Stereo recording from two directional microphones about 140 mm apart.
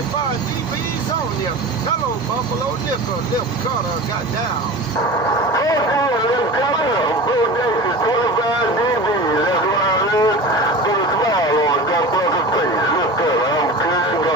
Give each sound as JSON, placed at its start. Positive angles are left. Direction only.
{"t": 5.5, "sound": "vehicle", "side_deg": 25}
{"t": 8.0, "sound": "a sound", "side_deg": 30}
{"t": 9.0, "sound": "vehicle", "side_deg": 30}